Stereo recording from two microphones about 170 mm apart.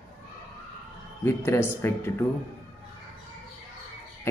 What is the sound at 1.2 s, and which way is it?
Speech, 15° left (ahead or behind).